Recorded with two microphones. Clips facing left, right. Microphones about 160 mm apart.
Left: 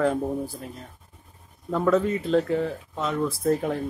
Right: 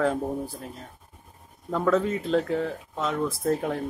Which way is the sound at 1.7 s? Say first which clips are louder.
Left 2 dB; centre (ahead or behind).